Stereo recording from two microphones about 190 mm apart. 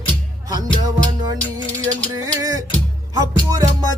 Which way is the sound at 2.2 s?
20° right (ahead or behind).